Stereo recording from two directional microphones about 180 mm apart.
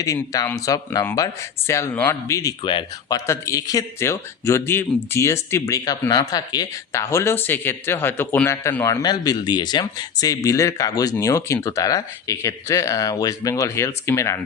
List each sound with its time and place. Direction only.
0.0 s a man's voice: 20° left (ahead or behind)